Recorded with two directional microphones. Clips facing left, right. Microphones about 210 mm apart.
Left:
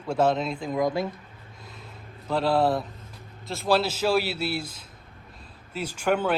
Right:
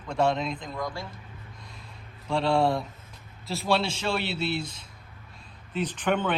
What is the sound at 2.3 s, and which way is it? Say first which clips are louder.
A man's voice: left 1 dB; 5° left (ahead or behind).